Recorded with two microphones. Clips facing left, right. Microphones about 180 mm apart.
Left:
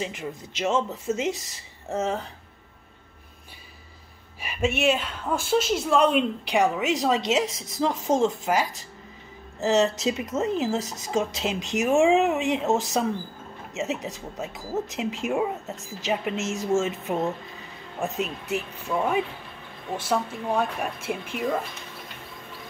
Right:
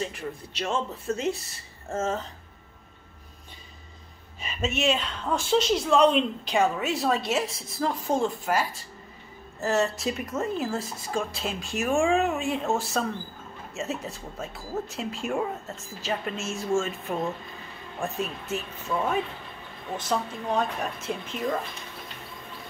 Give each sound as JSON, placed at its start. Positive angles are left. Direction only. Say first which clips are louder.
{"t": 0.0, "sound": "speech", "louder": "left 1 dB", "side_deg": 15}
{"t": 4.4, "sound": "speech", "louder": "left 3 dB", "side_deg": 10}